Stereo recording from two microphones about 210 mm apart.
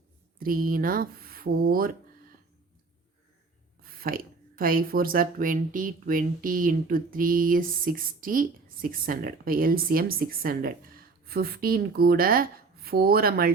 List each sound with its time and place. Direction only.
0.3 s speech: 45° right (ahead or behind)
4.0 s speech: 45° right (ahead or behind)